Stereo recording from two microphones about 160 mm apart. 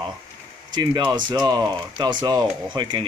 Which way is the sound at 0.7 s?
25° right (ahead or behind).